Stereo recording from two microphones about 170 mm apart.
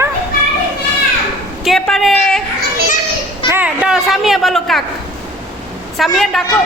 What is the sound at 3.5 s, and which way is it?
A woman's voice, 10° right (ahead or behind).